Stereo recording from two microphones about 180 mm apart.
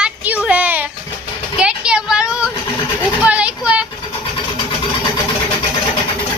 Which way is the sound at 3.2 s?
5° right (ahead or behind).